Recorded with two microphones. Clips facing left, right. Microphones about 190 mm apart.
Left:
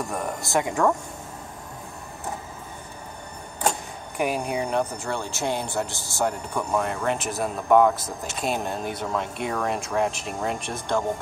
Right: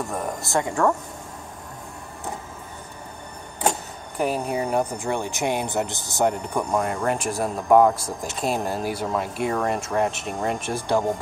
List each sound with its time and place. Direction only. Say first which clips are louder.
0.0 s speech: right 1 dB; centre (ahead or behind)
0.6 s a woman's voice: even; 15° left (ahead or behind)
4.2 s speech: right 1 dB; 10° left (ahead or behind); by 6.8 s 15° right (ahead or behind)
6.8 s speech: right 2 dB; centre (ahead or behind)